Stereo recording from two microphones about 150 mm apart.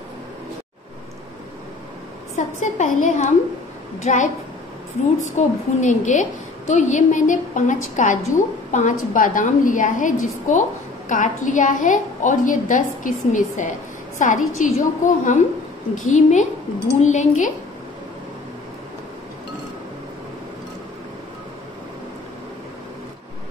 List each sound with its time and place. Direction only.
2.3 s a woman's voice: 55° left (ahead or behind)
5.4 s a woman's voice: 50° left (ahead or behind)